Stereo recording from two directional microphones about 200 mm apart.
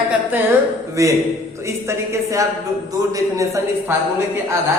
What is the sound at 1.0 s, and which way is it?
Speech, 15° right (ahead or behind).